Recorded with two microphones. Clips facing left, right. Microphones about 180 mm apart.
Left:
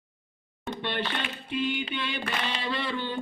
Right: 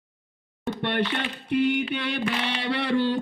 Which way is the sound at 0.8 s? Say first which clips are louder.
Right 5 dB; 70° right (ahead or behind).